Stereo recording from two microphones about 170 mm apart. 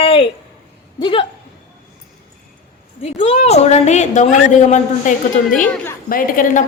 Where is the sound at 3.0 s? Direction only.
40° left (ahead or behind).